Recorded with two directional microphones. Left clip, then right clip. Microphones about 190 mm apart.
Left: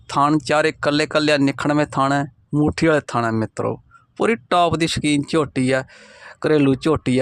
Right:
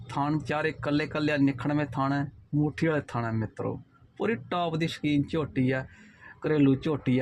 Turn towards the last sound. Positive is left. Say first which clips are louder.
# left 9 dB
turn(degrees=30)  # may be behind; listen again after turning